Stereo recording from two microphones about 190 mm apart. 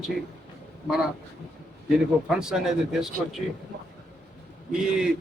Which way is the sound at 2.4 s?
5° right (ahead or behind).